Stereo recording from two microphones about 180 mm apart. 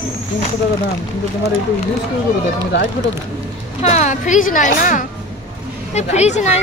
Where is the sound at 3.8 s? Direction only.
40° left (ahead or behind).